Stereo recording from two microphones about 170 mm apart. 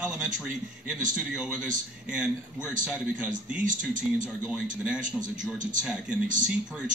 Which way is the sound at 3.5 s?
50° right (ahead or behind).